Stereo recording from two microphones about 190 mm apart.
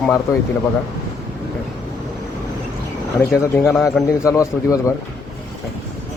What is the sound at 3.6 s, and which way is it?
Speech, 10° left (ahead or behind).